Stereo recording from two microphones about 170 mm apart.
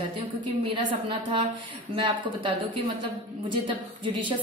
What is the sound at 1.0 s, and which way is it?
A woman's voice, 25° right (ahead or behind).